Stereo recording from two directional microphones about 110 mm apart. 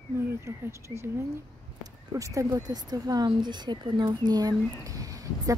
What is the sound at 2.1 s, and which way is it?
Speech, 30° right (ahead or behind).